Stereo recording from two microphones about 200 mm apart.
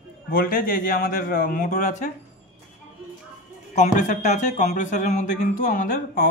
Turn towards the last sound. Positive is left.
turn(degrees=45)  # may be behind; listen again after turning